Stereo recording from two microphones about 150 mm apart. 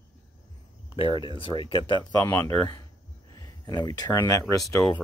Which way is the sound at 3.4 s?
25° left (ahead or behind).